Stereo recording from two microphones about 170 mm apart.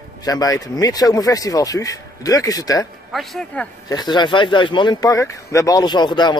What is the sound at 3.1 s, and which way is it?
Speech, centre (ahead or behind).